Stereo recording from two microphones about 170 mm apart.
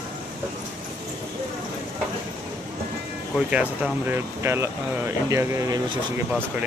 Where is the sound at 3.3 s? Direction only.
5° right (ahead or behind).